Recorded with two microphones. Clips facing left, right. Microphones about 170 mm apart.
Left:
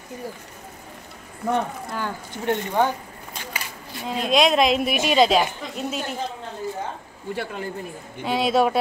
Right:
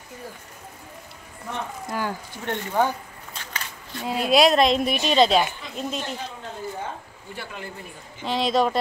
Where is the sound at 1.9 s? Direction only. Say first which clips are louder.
Right 1 dB; 10° right (ahead or behind).